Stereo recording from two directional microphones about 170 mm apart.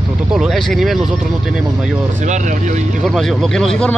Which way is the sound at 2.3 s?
45° right (ahead or behind).